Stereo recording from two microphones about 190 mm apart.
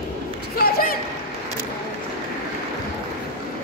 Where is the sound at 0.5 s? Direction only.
55° left (ahead or behind).